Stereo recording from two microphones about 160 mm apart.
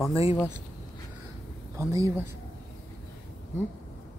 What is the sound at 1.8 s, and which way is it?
Speech, 20° right (ahead or behind).